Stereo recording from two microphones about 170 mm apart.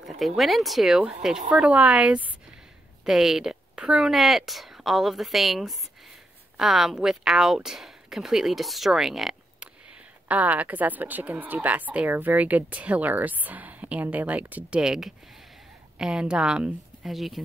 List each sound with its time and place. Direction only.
0.4 s a woman's voice: centre (ahead or behind)